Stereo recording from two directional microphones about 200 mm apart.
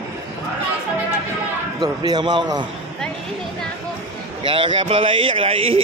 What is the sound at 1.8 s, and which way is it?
Speech, 20° right (ahead or behind).